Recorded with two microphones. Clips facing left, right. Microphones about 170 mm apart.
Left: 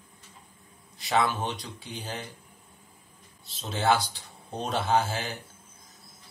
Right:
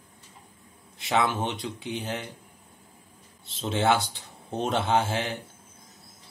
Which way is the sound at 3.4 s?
25° right (ahead or behind).